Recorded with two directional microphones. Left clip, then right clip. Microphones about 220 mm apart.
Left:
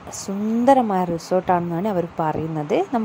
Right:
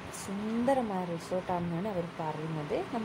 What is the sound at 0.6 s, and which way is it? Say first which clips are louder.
A woman's voice: left 14 dB; 40° left (ahead or behind).